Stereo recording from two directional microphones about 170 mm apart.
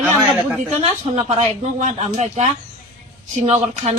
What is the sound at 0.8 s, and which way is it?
Speech, 40° right (ahead or behind).